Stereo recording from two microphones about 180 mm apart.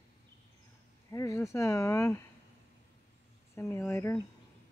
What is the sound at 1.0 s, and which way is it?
Speech, 15° left (ahead or behind).